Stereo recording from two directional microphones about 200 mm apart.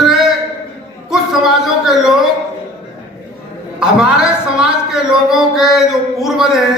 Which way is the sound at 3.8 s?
5° right (ahead or behind).